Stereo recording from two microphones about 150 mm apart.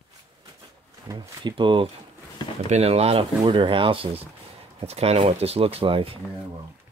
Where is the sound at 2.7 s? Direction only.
45° right (ahead or behind).